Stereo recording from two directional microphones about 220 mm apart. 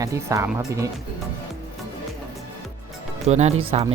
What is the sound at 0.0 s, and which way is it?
Speech, 15° right (ahead or behind).